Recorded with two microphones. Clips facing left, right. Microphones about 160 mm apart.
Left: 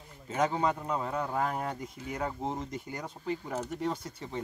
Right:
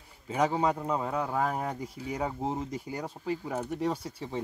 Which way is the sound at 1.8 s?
10° right (ahead or behind).